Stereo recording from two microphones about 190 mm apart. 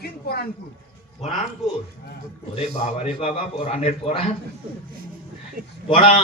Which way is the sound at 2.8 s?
35° left (ahead or behind).